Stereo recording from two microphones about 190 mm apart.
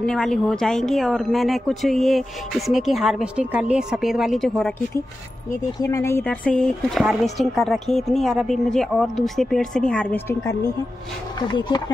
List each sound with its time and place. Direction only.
0.0 s speech: 5° left (ahead or behind)
5.8 s speech: 15° left (ahead or behind)
11.3 s speech: 25° left (ahead or behind)